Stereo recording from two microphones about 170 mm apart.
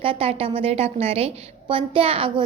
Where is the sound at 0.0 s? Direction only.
35° right (ahead or behind).